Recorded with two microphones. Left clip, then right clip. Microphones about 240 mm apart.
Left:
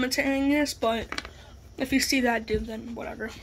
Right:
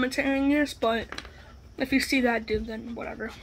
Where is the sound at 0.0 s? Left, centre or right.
Centre.